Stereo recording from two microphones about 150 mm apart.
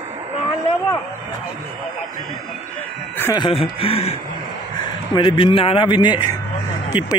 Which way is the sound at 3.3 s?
35° left (ahead or behind).